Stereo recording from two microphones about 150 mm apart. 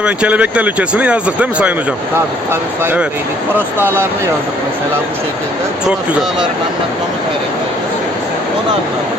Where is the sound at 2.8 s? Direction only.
15° right (ahead or behind).